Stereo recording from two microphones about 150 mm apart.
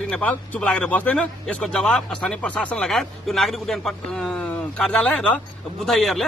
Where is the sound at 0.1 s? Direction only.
5° left (ahead or behind).